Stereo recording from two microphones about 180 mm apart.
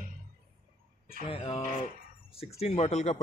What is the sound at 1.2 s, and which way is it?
Speech, 30° left (ahead or behind).